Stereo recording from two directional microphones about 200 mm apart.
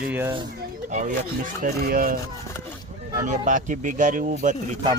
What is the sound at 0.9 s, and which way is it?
Speech, 35° right (ahead or behind).